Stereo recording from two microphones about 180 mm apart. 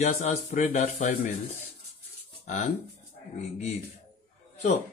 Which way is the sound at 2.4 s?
40° left (ahead or behind).